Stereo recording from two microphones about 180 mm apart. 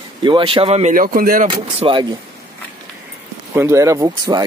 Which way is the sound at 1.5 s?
30° right (ahead or behind).